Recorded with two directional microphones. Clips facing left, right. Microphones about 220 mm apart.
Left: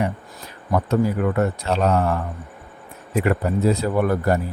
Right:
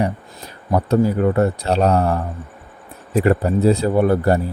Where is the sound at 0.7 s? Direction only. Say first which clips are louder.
Right 3 dB; 30° right (ahead or behind).